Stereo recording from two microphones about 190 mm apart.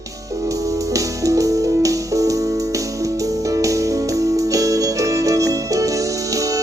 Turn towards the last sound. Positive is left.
turn(degrees=-15)  # may be behind; listen again after turning